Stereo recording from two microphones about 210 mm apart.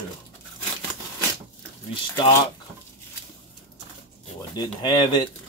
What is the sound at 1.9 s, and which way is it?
Speech, 15° left (ahead or behind).